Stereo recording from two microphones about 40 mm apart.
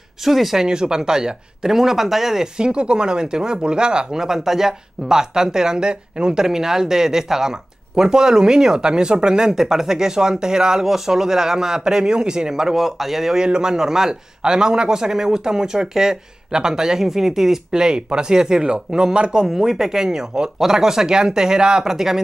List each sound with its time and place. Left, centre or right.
0.2 s speech: centre; by 19.4 s right
19.4 s speech: centre